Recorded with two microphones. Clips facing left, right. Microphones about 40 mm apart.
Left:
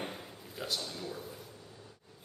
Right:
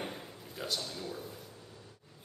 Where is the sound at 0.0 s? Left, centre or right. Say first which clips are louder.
Even; centre.